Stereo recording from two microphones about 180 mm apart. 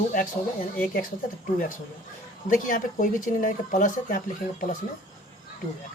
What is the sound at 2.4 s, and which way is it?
Speech, 50° left (ahead or behind).